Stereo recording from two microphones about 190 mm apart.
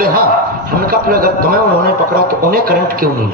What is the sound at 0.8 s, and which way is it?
A man's voice, 50° right (ahead or behind).